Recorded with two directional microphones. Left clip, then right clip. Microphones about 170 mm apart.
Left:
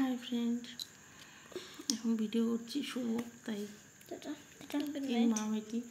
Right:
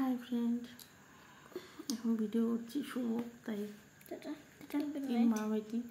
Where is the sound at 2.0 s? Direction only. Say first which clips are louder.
Right 1 dB; 5° left (ahead or behind).